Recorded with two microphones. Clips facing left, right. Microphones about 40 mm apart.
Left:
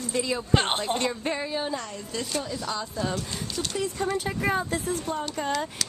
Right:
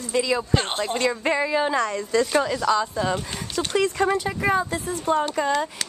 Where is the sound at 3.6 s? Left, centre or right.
Right.